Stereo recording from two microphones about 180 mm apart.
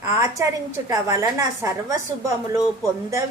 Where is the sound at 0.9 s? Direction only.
15° right (ahead or behind).